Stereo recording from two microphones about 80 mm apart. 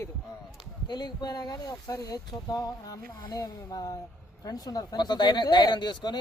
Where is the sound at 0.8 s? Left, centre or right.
Left.